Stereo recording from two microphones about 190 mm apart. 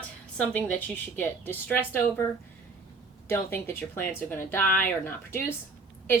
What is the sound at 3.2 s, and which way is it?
A woman's voice, 15° left (ahead or behind).